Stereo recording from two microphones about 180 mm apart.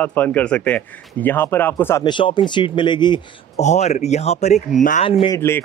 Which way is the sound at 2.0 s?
25° left (ahead or behind).